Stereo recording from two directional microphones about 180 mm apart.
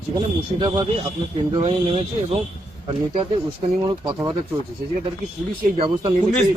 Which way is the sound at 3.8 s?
25° right (ahead or behind).